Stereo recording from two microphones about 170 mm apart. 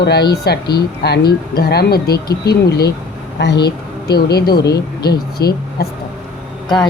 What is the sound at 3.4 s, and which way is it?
A woman's voice, 80° left.